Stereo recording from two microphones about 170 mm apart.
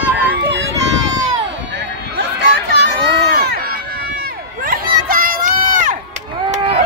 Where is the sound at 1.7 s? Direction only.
85° right.